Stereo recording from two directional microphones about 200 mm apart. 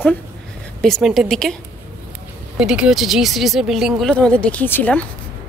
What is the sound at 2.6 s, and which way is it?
Speech, 5° right (ahead or behind).